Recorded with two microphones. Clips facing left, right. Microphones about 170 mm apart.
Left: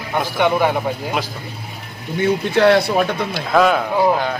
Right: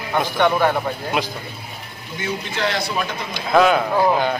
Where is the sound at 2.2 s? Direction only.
60° left (ahead or behind).